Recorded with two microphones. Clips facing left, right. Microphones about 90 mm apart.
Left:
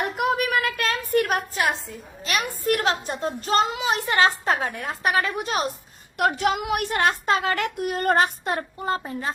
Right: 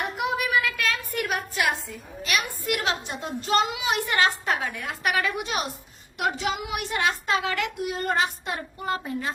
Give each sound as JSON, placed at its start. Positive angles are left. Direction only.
{"t": 0.0, "sound": "a sound", "side_deg": 50}
{"t": 2.6, "sound": "a woman's voice", "side_deg": 40}
{"t": 6.1, "sound": "a woman's voice", "side_deg": 55}